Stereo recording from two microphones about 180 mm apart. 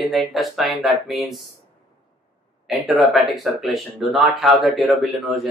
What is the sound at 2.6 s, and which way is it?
Speech, centre (ahead or behind).